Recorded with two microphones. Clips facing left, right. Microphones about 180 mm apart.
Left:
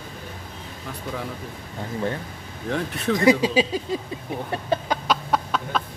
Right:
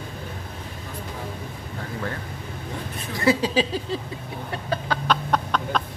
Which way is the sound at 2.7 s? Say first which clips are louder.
Left 11 dB; 80° left.